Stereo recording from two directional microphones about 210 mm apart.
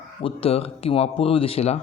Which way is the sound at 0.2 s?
25° left (ahead or behind).